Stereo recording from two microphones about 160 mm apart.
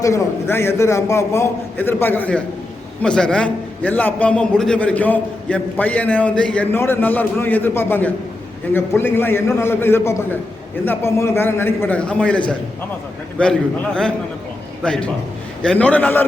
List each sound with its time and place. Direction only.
0.0 s a man's voice: 15° left (ahead or behind)
13.4 s a man's voice: 5° left (ahead or behind)